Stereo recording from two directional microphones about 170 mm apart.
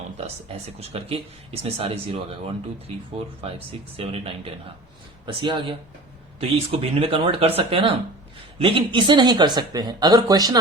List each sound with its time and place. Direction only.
0.3 s speech: 35° right (ahead or behind)
3.9 s speech: 35° right (ahead or behind)